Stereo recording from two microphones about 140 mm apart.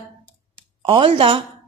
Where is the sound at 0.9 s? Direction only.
40° right (ahead or behind).